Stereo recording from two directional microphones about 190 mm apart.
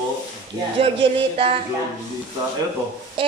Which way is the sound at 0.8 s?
30° right (ahead or behind).